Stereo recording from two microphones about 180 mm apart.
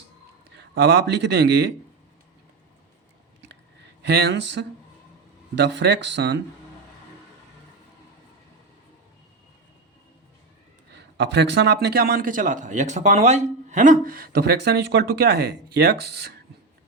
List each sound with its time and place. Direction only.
0.5 s speech: 70° right (ahead or behind)
4.0 s speech: 70° right (ahead or behind)
10.9 s a man's voice: 75° right (ahead or behind)